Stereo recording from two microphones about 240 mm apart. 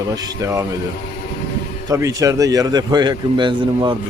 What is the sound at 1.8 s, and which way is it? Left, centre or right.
A man's voice, centre.